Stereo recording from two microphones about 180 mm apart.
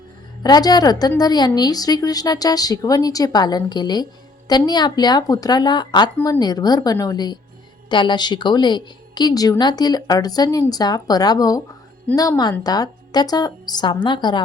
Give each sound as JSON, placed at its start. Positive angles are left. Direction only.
{"t": 0.4, "sound": "a woman's voice", "side_deg": 20}
{"t": 6.1, "sound": "speech", "side_deg": 10}
{"t": 6.4, "sound": "a woman's voice", "side_deg": 20}